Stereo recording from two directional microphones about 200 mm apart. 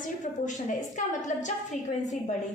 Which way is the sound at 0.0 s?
40° left (ahead or behind).